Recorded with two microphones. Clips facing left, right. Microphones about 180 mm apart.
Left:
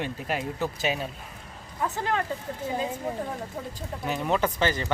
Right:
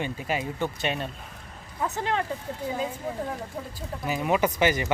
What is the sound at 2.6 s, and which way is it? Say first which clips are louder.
Speech: left 1 dB; 25° left (ahead or behind).